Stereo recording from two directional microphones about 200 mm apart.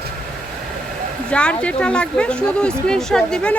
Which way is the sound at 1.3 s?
5° left (ahead or behind).